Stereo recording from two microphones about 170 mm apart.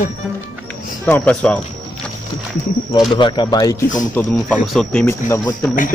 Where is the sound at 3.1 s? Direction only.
30° left (ahead or behind).